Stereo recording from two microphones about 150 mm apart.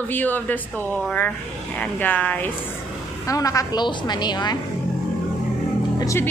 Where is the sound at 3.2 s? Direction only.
20° left (ahead or behind).